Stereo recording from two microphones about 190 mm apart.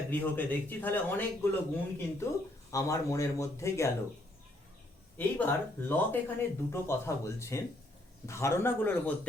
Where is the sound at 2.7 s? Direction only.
15° left (ahead or behind).